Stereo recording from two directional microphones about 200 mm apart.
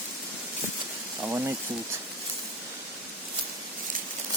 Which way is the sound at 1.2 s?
10° right (ahead or behind).